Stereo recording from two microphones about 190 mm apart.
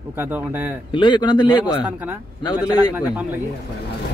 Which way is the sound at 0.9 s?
25° left (ahead or behind).